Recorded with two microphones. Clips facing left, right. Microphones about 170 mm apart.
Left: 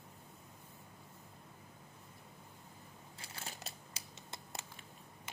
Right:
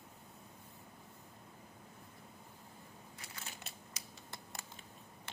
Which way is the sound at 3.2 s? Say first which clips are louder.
Left 3 dB; 35° left (ahead or behind).